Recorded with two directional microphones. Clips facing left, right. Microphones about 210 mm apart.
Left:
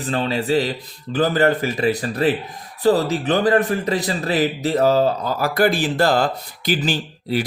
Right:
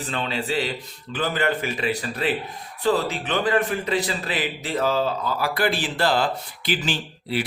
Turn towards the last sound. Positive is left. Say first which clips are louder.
# left 5 dB
turn(degrees=40)  # may be behind; listen again after turning